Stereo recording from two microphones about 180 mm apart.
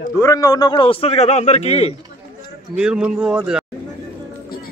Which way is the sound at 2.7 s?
5° right (ahead or behind).